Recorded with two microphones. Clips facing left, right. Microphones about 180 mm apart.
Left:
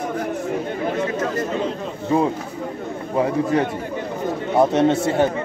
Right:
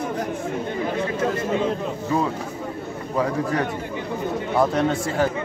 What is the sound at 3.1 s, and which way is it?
Speech, 25° left (ahead or behind).